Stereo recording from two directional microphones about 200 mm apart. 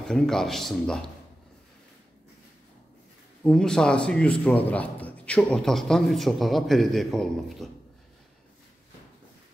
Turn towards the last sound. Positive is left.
turn(degrees=0)  # may be behind; listen again after turning